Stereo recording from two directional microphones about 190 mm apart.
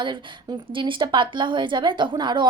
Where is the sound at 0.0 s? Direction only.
25° right (ahead or behind).